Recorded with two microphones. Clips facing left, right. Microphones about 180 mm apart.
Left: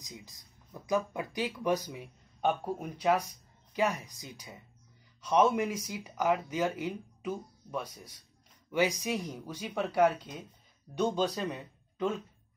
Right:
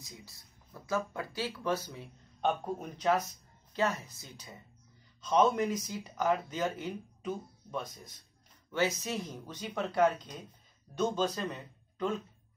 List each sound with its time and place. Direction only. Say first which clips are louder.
0.0 s a man's voice: left 3 dB; 15° left (ahead or behind)